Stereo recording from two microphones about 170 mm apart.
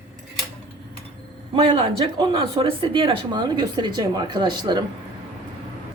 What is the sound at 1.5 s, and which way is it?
A man's voice, 30° right (ahead or behind).